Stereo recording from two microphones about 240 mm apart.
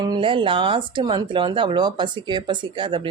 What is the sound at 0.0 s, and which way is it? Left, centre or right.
Speech, centre.